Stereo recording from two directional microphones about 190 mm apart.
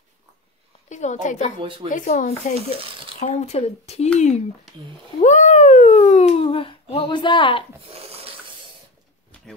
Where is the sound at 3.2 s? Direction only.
35° left (ahead or behind).